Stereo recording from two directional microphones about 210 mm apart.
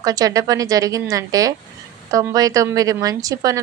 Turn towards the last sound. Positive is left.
turn(degrees=-15)  # may be behind; listen again after turning